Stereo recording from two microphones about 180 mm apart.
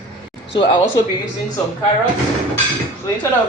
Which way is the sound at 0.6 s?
25° left (ahead or behind).